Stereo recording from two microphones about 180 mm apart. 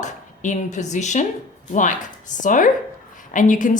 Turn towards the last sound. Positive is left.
turn(degrees=45)  # may be behind; listen again after turning